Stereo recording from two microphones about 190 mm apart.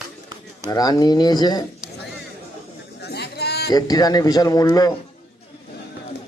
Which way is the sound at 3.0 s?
60° left (ahead or behind).